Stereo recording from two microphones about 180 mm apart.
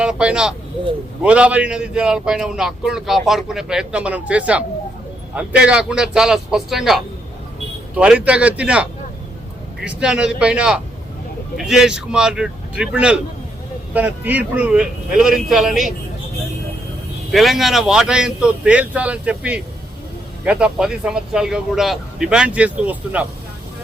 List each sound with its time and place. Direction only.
0.0 s a man's voice: 5° right (ahead or behind)
17.3 s a man's voice: centre (ahead or behind)